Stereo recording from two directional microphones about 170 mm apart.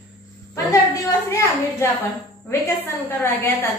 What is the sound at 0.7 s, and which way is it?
A woman's voice, 20° left (ahead or behind).